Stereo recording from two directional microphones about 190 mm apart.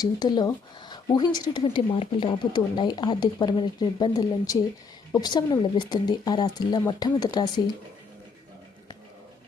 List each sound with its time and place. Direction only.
0.0 s speech: 20° left (ahead or behind)